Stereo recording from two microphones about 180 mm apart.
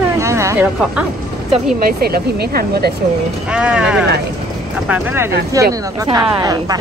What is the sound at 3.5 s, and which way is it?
Speech, 5° right (ahead or behind).